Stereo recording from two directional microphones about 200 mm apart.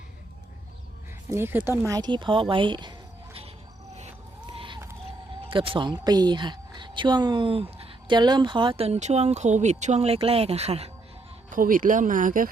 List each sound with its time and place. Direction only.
1.3 s speech: 10° right (ahead or behind)
1.9 s a woman's voice: 20° right (ahead or behind)
4.4 s a sound: 25° right (ahead or behind)
5.5 s a woman's voice: 25° right (ahead or behind)
11.5 s speech: 45° right (ahead or behind)